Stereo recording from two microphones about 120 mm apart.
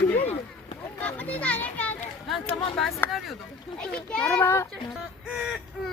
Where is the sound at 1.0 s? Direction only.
15° left (ahead or behind).